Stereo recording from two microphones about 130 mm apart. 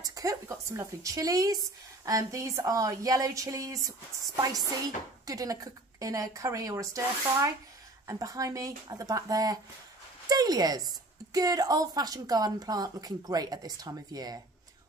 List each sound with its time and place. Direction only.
0.0 s a woman's voice: 25° right (ahead or behind)
5.2 s a woman's voice: 25° right (ahead or behind)